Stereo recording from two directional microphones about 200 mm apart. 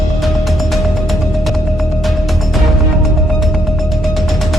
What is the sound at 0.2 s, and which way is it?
Music, centre (ahead or behind).